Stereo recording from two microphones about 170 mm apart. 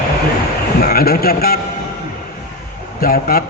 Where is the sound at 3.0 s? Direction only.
60° left (ahead or behind).